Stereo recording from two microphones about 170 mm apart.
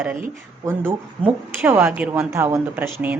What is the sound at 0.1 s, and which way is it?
A woman's voice, 15° right (ahead or behind).